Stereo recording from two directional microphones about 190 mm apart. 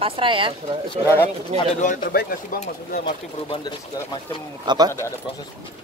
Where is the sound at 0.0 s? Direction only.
30° right (ahead or behind).